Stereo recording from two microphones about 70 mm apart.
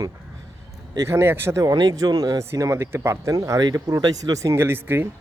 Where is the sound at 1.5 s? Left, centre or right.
Right.